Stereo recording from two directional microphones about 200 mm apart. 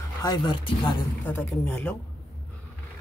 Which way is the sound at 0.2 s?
20° left (ahead or behind).